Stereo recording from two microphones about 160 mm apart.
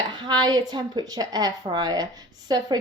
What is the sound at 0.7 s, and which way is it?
A woman's voice, 25° right (ahead or behind).